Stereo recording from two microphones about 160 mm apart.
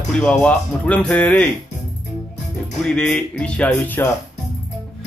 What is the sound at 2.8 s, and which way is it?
Speech, 5° left (ahead or behind).